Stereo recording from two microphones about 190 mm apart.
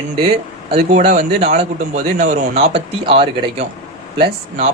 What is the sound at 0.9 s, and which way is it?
A man's voice, 35° right (ahead or behind).